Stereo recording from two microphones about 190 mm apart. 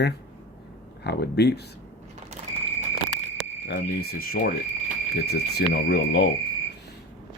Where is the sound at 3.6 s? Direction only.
60° left (ahead or behind).